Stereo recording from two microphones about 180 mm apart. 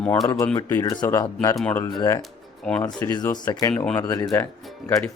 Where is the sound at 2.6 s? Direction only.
5° left (ahead or behind).